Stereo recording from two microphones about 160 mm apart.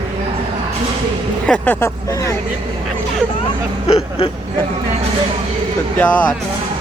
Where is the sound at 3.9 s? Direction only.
35° left (ahead or behind).